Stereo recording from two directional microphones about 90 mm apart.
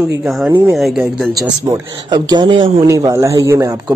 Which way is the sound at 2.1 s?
50° right (ahead or behind).